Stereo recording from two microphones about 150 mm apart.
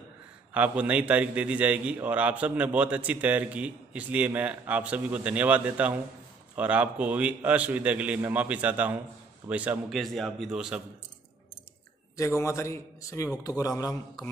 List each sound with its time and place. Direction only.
0.6 s a man's voice: 10° right (ahead or behind)
12.2 s a man's voice: 20° left (ahead or behind)